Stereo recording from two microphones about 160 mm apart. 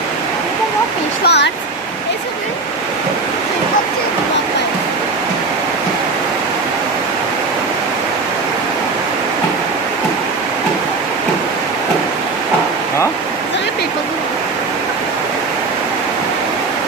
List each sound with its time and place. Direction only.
1.2 s speech: 90° left